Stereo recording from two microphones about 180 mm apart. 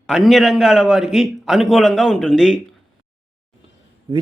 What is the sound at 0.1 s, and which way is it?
A man's voice, centre (ahead or behind).